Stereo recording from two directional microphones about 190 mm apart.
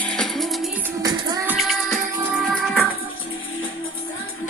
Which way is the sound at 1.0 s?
20° right (ahead or behind).